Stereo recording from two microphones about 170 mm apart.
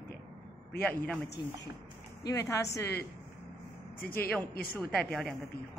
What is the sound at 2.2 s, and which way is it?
Speech, 20° left (ahead or behind).